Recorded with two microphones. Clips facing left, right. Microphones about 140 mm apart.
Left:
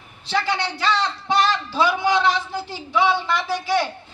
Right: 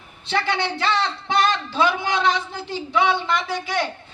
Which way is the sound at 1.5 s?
20° right (ahead or behind).